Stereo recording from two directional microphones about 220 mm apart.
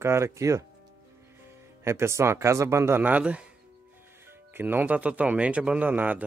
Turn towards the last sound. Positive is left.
turn(degrees=-10)  # may be behind; listen again after turning